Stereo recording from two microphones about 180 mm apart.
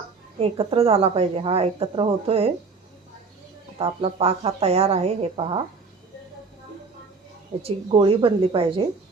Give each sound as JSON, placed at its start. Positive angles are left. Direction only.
{"t": 0.3, "sound": "a woman's voice", "side_deg": -30}
{"t": 3.8, "sound": "a woman's voice", "side_deg": -30}
{"t": 7.6, "sound": "speech", "side_deg": -30}